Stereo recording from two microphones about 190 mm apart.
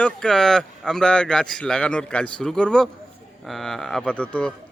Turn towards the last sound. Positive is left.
turn(degrees=5)  # may be behind; listen again after turning